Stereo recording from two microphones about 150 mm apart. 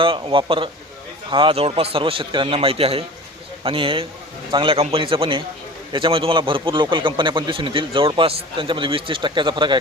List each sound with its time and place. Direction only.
0.0 s a man's voice: 35° right (ahead or behind)